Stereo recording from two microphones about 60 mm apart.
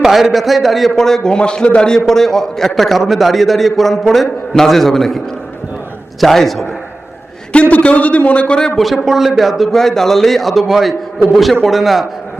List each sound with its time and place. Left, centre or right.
0.0 s a man's voice: centre
7.5 s speech: centre
9.0 s a man's voice: centre